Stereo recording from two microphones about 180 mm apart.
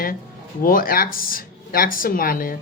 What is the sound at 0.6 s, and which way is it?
Speech, 50° left (ahead or behind).